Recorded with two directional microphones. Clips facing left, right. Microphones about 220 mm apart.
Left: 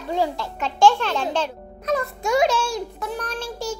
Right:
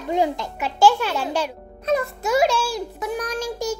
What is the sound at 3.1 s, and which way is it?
Speech, 15° right (ahead or behind).